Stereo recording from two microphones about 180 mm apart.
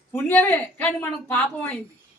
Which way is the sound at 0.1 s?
10° left (ahead or behind).